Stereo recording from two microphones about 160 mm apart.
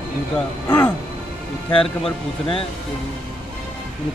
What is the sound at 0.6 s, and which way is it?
Speech, 15° left (ahead or behind).